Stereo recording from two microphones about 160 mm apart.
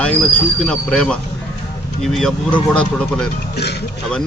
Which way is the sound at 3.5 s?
90° left.